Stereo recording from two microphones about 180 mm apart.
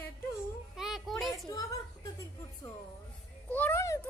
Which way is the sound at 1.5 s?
20° left (ahead or behind).